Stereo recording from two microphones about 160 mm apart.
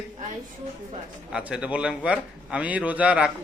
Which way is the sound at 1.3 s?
5° right (ahead or behind).